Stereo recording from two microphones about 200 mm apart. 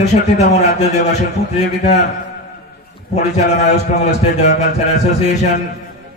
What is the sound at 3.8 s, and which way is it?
Speech, 35° left (ahead or behind).